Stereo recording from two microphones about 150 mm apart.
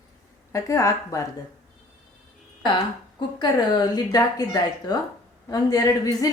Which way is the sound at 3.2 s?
30° left (ahead or behind).